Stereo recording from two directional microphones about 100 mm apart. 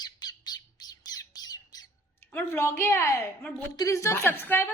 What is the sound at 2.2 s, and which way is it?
A woman's voice, 20° left (ahead or behind).